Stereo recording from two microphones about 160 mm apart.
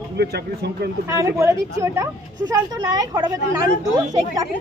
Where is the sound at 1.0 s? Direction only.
15° right (ahead or behind).